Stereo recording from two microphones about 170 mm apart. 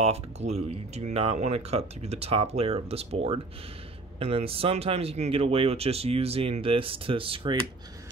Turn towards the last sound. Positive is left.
turn(degrees=-30)  # may be behind; listen again after turning